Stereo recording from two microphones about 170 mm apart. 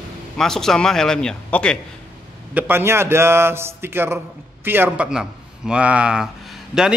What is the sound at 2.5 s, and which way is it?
A man's voice, 10° right (ahead or behind).